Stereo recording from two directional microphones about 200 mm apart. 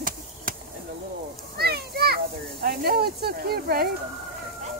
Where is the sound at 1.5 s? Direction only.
50° right (ahead or behind).